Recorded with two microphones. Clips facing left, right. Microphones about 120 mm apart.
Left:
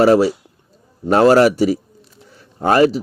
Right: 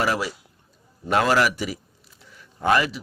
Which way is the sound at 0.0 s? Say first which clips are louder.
Left 12 dB; 30° left (ahead or behind).